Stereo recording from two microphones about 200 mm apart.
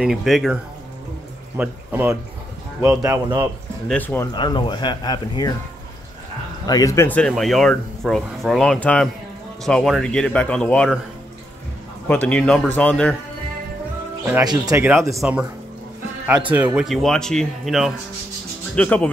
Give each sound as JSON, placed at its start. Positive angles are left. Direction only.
{"t": 0.0, "sound": "speech", "side_deg": 0}
{"t": 1.6, "sound": "speech", "side_deg": -10}
{"t": 3.9, "sound": "speech", "side_deg": 10}
{"t": 4.3, "sound": "speech", "side_deg": 20}
{"t": 6.6, "sound": "speech", "side_deg": 20}
{"t": 12.1, "sound": "speech", "side_deg": 5}
{"t": 14.4, "sound": "speech", "side_deg": -20}